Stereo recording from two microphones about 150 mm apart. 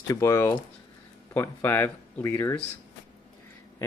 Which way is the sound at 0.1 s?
20° left (ahead or behind).